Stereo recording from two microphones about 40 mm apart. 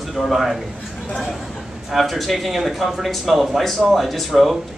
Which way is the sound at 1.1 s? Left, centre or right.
Centre.